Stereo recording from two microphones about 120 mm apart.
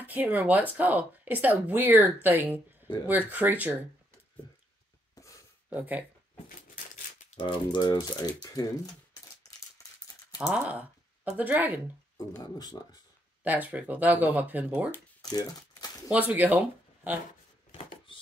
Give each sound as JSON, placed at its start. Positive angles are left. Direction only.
{"t": 0.0, "sound": "speech", "side_deg": -15}
{"t": 5.7, "sound": "speech", "side_deg": -15}
{"t": 7.3, "sound": "speech", "side_deg": 40}
{"t": 10.3, "sound": "speech", "side_deg": -10}
{"t": 12.2, "sound": "speech", "side_deg": 30}
{"t": 13.4, "sound": "speech", "side_deg": -15}
{"t": 15.2, "sound": "crumpling", "side_deg": 30}
{"t": 16.1, "sound": "speech", "side_deg": -15}
{"t": 18.1, "sound": "a sound", "side_deg": 45}